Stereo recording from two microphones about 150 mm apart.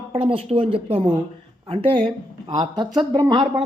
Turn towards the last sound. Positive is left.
turn(degrees=-30)  # may be behind; listen again after turning